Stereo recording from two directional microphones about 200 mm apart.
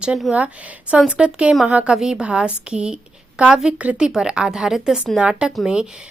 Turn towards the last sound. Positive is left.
turn(degrees=-5)  # may be behind; listen again after turning